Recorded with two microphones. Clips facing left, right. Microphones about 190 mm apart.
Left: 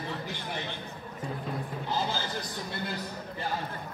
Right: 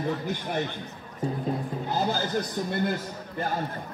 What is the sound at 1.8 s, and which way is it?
Speech, 45° right (ahead or behind).